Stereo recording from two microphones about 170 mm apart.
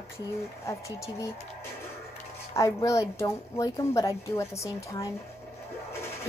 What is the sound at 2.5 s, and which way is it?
A woman's voice, 20° left (ahead or behind).